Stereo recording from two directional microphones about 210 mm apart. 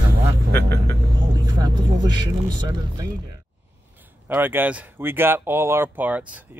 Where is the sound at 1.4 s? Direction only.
20° right (ahead or behind).